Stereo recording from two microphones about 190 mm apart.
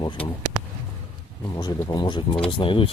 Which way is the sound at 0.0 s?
25° left (ahead or behind).